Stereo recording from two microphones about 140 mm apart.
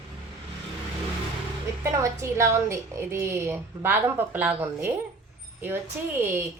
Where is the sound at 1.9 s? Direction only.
20° right (ahead or behind).